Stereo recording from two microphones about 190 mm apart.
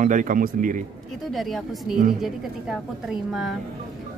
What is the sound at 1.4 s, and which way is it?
Speech, centre (ahead or behind).